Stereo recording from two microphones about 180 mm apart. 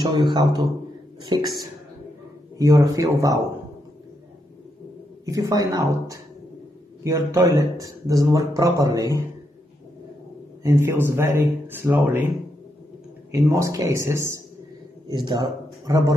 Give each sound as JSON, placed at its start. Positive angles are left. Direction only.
{"t": 0.0, "sound": "speech", "side_deg": -25}
{"t": 2.5, "sound": "speech", "side_deg": -20}
{"t": 5.2, "sound": "speech", "side_deg": -20}
{"t": 10.6, "sound": "speech", "side_deg": -15}
{"t": 13.5, "sound": "speech", "side_deg": -20}